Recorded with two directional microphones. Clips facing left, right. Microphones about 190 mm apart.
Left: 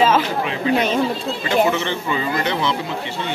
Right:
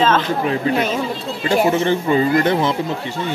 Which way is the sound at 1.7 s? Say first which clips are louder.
Right 6 dB; 40° right (ahead or behind).